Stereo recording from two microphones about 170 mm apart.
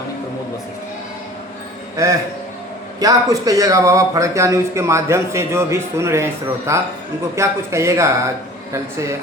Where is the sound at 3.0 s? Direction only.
20° right (ahead or behind).